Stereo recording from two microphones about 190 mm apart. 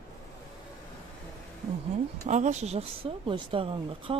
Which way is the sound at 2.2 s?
40° right (ahead or behind).